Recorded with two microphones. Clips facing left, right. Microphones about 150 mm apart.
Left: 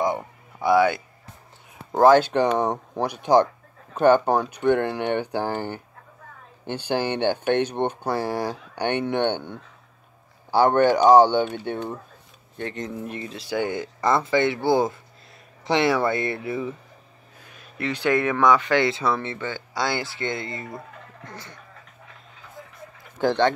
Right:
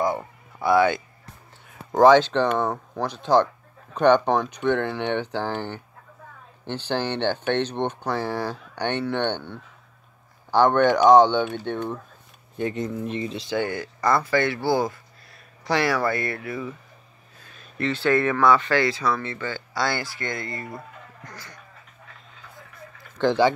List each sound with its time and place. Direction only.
0.0 s a sound: 15° left (ahead or behind)
1.9 s speech: 5° left (ahead or behind)
13.2 s speech: 5° left (ahead or behind); by 16.7 s 25° left (ahead or behind)
17.5 s speech: 10° left (ahead or behind); by 21.5 s 25° left (ahead or behind)
23.2 s speech: 10° left (ahead or behind)